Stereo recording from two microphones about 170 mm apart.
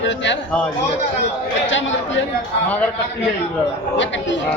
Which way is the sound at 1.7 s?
90° left.